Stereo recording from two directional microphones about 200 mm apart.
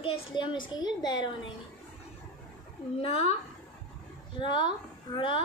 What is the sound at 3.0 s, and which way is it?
Speech, 30° left (ahead or behind).